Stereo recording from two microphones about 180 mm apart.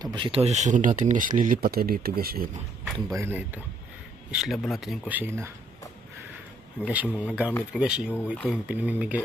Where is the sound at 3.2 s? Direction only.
10° right (ahead or behind).